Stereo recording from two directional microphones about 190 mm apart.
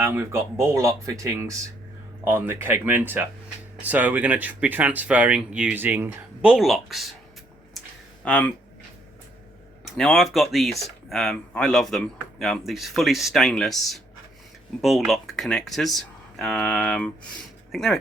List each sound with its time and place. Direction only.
0.0 s speech: 15° right (ahead or behind)
8.2 s speech: 5° left (ahead or behind)
9.8 s speech: centre (ahead or behind)